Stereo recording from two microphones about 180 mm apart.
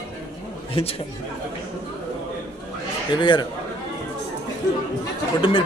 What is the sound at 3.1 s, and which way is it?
Speech, 25° left (ahead or behind).